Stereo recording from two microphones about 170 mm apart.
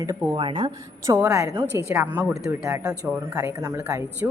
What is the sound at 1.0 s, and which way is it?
Speech, 15° right (ahead or behind).